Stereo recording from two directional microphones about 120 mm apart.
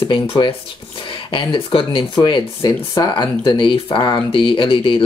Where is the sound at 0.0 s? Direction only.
45° left (ahead or behind).